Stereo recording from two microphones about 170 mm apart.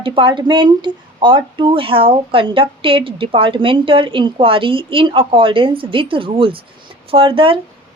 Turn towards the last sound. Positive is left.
turn(degrees=-30)  # may be behind; listen again after turning